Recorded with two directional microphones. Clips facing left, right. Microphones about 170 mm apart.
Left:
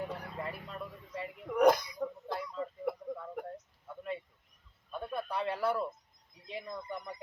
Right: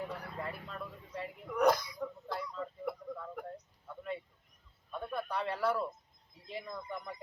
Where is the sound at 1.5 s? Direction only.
30° left (ahead or behind).